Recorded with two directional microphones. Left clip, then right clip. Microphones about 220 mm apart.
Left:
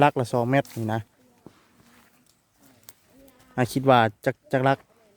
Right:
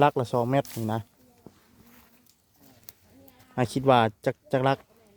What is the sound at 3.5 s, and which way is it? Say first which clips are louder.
Speech: left 2 dB; 15° left (ahead or behind).